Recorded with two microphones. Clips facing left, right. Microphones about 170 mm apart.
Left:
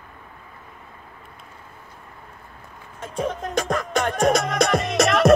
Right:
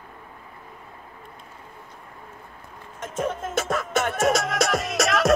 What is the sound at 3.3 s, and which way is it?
Music, 5° right (ahead or behind).